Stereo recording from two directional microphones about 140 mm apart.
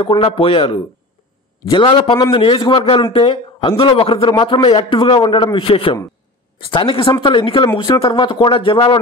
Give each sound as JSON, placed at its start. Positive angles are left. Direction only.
{"t": 0.0, "sound": "speech", "side_deg": 40}